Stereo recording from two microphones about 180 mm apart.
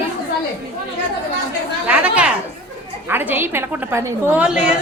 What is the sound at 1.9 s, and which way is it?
A woman's voice, 5° right (ahead or behind).